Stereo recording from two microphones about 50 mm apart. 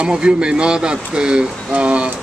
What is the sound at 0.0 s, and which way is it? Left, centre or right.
Speech, centre.